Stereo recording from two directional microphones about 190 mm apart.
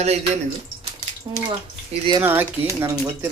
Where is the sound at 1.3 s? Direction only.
20° right (ahead or behind).